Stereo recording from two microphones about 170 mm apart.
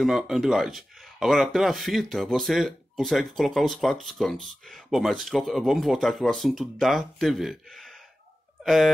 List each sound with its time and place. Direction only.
0.0 s speech: centre (ahead or behind)